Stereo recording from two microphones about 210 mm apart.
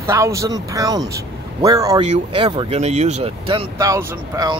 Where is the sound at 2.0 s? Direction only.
30° right (ahead or behind).